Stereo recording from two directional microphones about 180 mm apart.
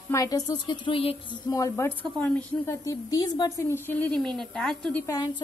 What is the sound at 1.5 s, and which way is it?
A woman's voice, 15° left (ahead or behind).